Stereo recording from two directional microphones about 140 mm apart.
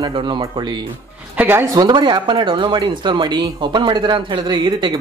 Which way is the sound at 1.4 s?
15° right (ahead or behind).